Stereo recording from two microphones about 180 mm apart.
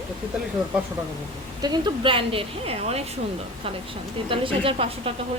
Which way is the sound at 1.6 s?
25° right (ahead or behind).